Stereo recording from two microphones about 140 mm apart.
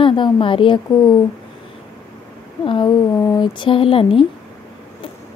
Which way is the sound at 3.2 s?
25° left (ahead or behind).